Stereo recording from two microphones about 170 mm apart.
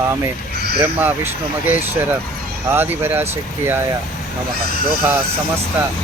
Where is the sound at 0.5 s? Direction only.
70° right (ahead or behind).